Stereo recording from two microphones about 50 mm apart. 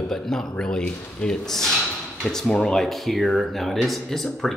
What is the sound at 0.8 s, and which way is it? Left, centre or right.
Speech, centre.